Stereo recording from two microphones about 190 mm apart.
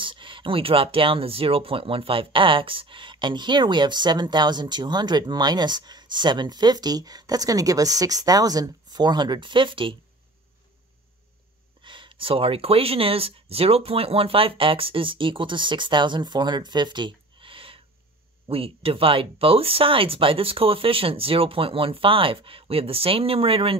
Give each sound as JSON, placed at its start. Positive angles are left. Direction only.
{"t": 0.0, "sound": "speech", "side_deg": -25}
{"t": 11.8, "sound": "speech", "side_deg": -25}